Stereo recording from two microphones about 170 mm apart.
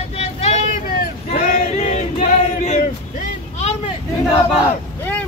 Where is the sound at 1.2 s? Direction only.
40° left (ahead or behind).